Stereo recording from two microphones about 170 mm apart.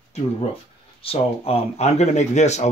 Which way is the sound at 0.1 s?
40° left (ahead or behind).